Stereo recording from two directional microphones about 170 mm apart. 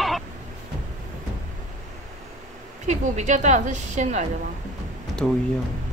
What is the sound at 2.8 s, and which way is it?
A woman's voice, 45° right (ahead or behind).